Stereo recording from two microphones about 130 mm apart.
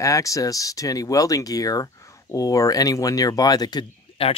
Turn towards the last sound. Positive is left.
turn(degrees=45)  # may be behind; listen again after turning